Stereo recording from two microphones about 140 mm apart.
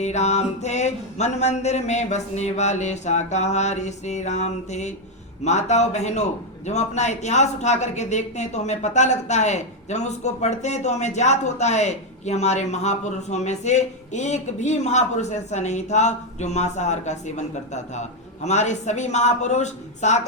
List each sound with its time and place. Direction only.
0.0 s a man's voice: 55° left (ahead or behind)